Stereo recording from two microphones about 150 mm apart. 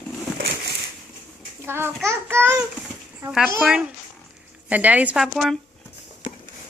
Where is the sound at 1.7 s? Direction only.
15° right (ahead or behind).